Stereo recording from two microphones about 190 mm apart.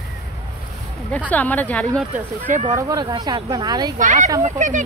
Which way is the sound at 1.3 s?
10° left (ahead or behind).